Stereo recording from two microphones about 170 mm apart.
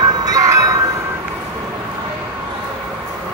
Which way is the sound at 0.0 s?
25° right (ahead or behind).